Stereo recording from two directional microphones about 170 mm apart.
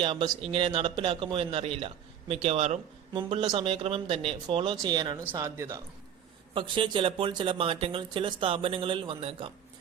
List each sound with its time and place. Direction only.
0.0 s speech: 30° right (ahead or behind)
6.5 s speech: 30° right (ahead or behind)